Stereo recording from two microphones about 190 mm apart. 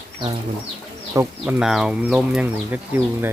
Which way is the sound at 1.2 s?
5° right (ahead or behind).